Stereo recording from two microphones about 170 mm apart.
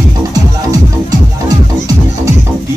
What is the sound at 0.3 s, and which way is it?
Music, 20° right (ahead or behind).